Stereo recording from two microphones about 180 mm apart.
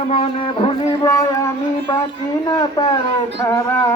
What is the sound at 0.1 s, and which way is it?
Speech, 30° left (ahead or behind).